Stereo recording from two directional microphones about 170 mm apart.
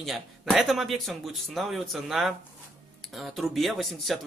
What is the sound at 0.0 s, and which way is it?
Speech, centre (ahead or behind).